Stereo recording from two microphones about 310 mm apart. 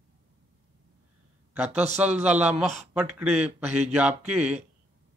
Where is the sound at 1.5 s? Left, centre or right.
Centre.